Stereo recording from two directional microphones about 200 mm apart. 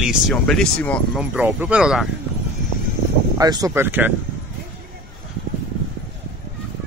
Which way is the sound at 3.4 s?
20° right (ahead or behind).